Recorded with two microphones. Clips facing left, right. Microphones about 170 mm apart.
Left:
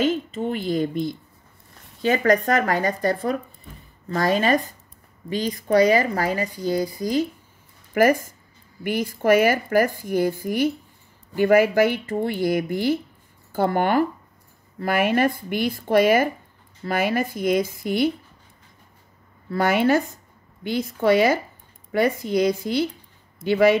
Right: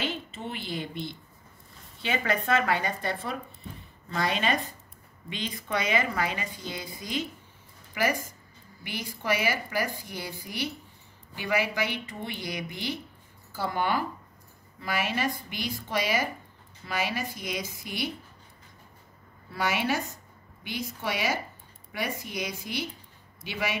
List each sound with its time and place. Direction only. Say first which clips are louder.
0.0 s a woman's voice: left 11 dB; 45° left (ahead or behind)
19.5 s a woman's voice: left 10 dB; 50° left (ahead or behind)